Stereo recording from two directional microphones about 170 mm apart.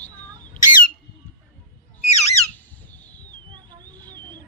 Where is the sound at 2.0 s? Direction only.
40° left (ahead or behind).